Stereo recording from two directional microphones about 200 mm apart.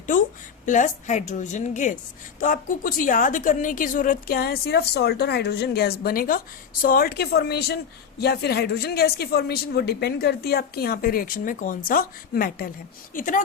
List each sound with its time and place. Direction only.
0.6 s a woman's voice: 40° left (ahead or behind)